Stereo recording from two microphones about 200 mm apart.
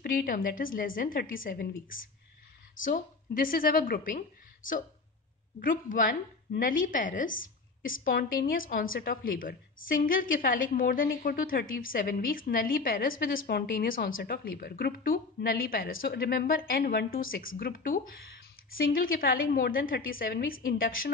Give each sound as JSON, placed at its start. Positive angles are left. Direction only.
{"t": 0.0, "sound": "a woman's voice", "side_deg": 45}
{"t": 5.6, "sound": "a woman's voice", "side_deg": 40}